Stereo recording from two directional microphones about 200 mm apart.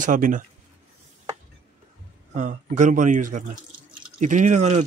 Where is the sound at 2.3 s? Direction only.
40° right (ahead or behind).